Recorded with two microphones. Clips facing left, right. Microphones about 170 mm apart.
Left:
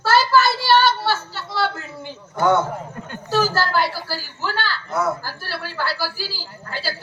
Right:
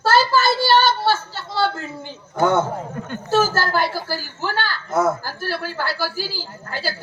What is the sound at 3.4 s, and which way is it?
Speech, 50° right (ahead or behind).